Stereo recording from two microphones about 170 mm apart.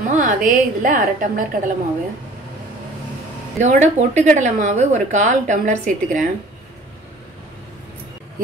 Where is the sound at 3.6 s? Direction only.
45° right (ahead or behind).